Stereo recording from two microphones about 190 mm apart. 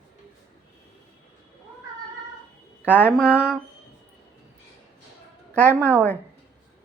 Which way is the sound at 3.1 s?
Centre (ahead or behind).